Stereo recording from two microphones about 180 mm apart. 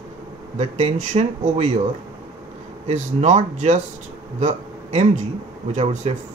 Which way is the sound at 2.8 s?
40° right (ahead or behind).